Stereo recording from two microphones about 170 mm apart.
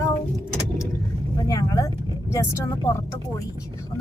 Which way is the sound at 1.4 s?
20° left (ahead or behind).